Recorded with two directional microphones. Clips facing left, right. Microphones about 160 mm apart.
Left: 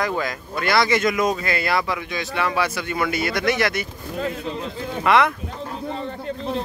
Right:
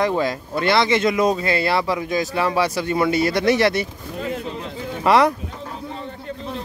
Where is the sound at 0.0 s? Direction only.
30° right (ahead or behind).